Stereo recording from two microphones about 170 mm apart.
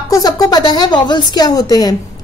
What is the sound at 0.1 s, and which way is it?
A woman's voice, 20° left (ahead or behind).